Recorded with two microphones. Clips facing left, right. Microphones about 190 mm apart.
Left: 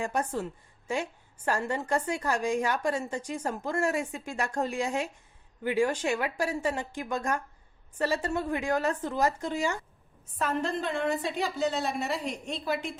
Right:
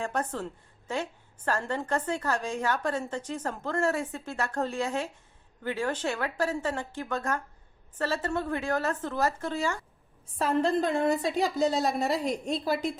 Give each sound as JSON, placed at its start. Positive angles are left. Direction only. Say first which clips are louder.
{"t": 0.0, "sound": "a woman's voice", "louder": "left 1 dB", "side_deg": 10}
{"t": 10.3, "sound": "a woman's voice", "louder": "right 4 dB", "side_deg": -30}